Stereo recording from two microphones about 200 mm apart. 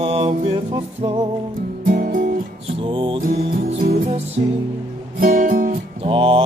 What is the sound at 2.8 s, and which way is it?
Music, 25° right (ahead or behind).